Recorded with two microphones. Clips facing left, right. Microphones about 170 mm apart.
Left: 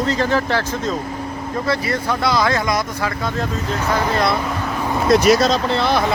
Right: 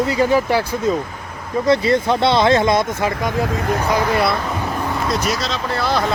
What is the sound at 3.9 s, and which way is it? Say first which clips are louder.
Speech: even; 10° right (ahead or behind).